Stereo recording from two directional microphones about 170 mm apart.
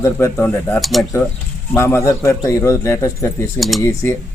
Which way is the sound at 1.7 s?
15° left (ahead or behind).